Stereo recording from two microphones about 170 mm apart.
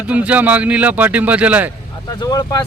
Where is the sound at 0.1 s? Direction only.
10° right (ahead or behind).